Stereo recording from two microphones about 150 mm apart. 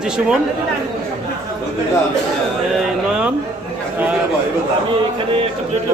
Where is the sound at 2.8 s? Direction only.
5° right (ahead or behind).